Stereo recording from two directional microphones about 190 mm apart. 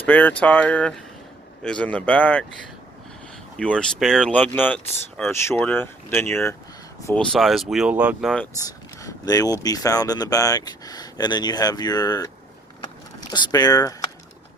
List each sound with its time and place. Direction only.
0.0 s speech: 10° left (ahead or behind)
3.6 s speech: 5° left (ahead or behind)
7.1 s speech: centre (ahead or behind)
9.0 s speech: 20° left (ahead or behind)
13.3 s speech: 20° left (ahead or behind)